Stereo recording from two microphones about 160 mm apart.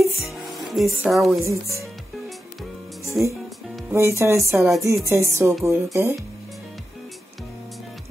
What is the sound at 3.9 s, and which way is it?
Speech, 15° right (ahead or behind).